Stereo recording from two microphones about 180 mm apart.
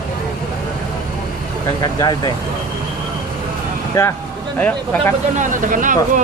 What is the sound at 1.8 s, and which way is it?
Speech, 20° left (ahead or behind).